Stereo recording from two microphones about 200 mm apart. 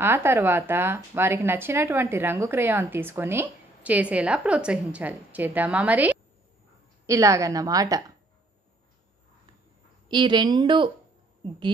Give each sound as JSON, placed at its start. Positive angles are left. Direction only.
{"t": 0.0, "sound": "speech", "side_deg": -10}
{"t": 10.0, "sound": "a woman's voice", "side_deg": -20}